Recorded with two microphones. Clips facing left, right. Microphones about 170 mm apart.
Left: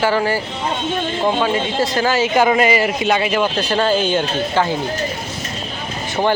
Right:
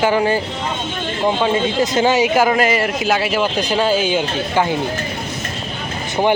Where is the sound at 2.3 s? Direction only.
Centre (ahead or behind).